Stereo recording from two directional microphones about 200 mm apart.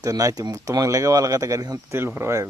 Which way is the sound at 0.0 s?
15° right (ahead or behind).